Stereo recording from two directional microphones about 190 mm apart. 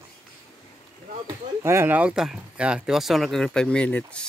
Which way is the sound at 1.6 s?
10° right (ahead or behind).